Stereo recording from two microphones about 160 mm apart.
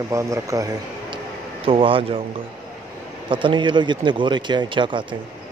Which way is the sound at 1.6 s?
35° right (ahead or behind).